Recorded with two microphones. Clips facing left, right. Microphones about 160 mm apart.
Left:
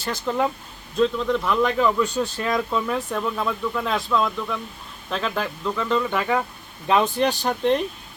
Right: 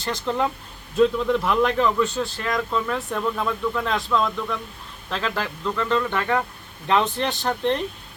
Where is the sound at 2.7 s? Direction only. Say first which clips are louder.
Left 1 dB; 10° left (ahead or behind).